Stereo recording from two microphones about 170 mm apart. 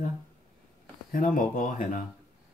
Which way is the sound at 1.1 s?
55° left (ahead or behind).